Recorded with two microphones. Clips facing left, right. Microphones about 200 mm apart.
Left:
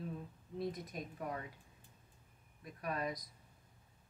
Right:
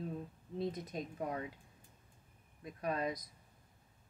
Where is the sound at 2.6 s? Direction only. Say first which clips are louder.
Right 3 dB; 25° right (ahead or behind).